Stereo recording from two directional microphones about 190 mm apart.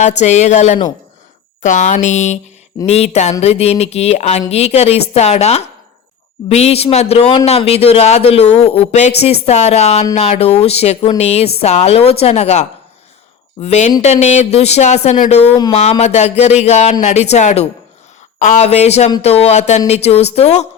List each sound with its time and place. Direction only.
0.2 s a man's voice: 35° left (ahead or behind)